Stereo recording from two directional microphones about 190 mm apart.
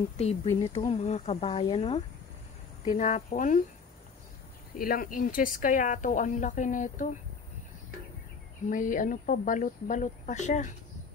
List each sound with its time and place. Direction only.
0.2 s speech: 35° left (ahead or behind)
4.7 s speech: 50° left (ahead or behind)
8.6 s speech: 45° left (ahead or behind)